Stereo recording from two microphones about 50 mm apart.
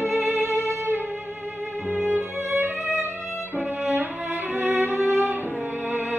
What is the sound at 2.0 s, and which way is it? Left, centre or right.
Music, right.